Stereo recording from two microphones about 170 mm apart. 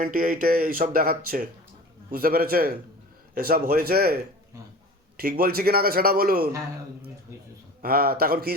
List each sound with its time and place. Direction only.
0.0 s speech: 55° right (ahead or behind)
7.8 s speech: 60° right (ahead or behind)